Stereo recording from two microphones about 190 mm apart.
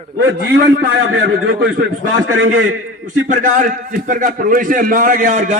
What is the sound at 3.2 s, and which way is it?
A man's voice, 45° right (ahead or behind).